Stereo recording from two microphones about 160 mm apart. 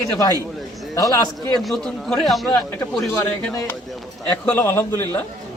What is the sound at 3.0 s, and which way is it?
Speech, 10° left (ahead or behind).